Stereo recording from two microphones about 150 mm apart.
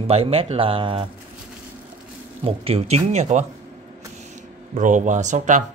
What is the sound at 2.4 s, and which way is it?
Speech, 40° right (ahead or behind).